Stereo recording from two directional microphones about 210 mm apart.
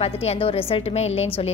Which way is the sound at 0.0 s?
30° left (ahead or behind).